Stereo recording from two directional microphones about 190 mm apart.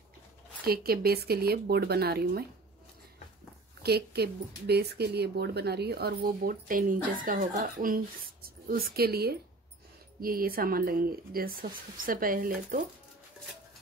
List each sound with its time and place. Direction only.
0.7 s a woman's voice: 55° right (ahead or behind)
3.8 s a woman's voice: 55° right (ahead or behind)